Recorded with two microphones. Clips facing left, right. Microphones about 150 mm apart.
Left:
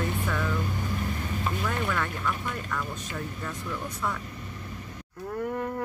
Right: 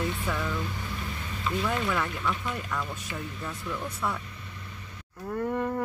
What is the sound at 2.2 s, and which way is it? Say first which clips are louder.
Speech: even; 5° left (ahead or behind).